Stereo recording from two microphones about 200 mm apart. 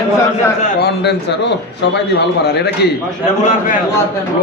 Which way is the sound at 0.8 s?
55° left (ahead or behind).